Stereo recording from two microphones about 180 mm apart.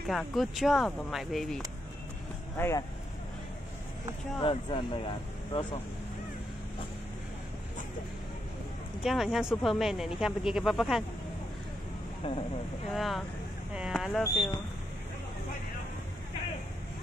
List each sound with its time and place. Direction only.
0.1 s speech: centre (ahead or behind)
2.5 s speech: 15° left (ahead or behind)
4.4 s speech: 30° left (ahead or behind)
9.0 s speech: centre (ahead or behind)
12.2 s speech: 30° left (ahead or behind)
12.9 s speech: centre (ahead or behind)